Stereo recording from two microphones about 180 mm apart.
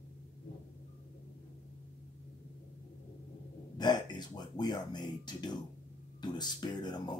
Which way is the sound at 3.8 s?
25° left (ahead or behind).